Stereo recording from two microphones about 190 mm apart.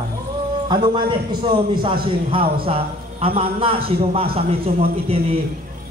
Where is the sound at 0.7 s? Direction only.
25° right (ahead or behind).